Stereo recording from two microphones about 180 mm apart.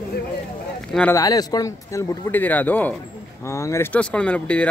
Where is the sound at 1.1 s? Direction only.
20° left (ahead or behind).